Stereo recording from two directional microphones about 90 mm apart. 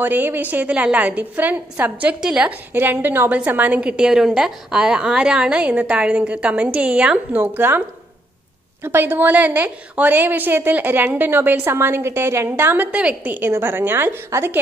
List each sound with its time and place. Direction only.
0.0 s a woman's voice: 20° right (ahead or behind)
2.7 s a woman's voice: 20° right (ahead or behind)
8.8 s a woman's voice: 25° right (ahead or behind)